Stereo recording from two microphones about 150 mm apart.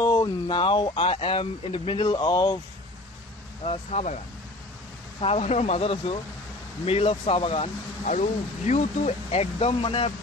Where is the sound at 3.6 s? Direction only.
45° left (ahead or behind).